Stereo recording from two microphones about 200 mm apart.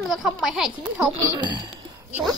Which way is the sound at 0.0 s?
Centre (ahead or behind).